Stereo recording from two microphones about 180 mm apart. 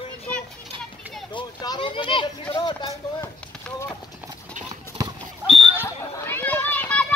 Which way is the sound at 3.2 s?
15° left (ahead or behind).